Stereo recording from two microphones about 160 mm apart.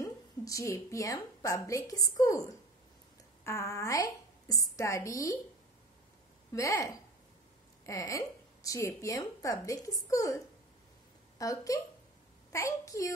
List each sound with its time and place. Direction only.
0.0 s a woman's voice: 20° left (ahead or behind)
6.5 s a woman's voice: 20° left (ahead or behind)